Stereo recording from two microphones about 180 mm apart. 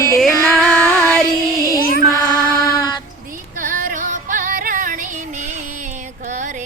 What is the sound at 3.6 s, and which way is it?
Music, 50° right (ahead or behind).